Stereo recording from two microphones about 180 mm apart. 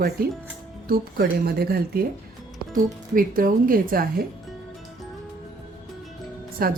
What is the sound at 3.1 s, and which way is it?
Speech, 50° right (ahead or behind).